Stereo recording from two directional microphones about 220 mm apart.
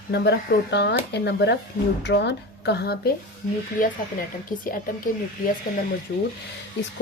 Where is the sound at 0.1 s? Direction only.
50° left (ahead or behind).